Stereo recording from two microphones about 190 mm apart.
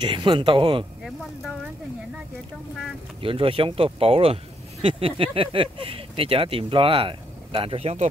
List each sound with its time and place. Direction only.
0.0 s speech: 25° right (ahead or behind)
3.2 s speech: 30° right (ahead or behind)